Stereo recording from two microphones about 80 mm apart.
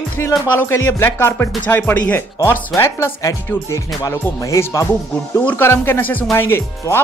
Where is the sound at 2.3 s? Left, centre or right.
Left.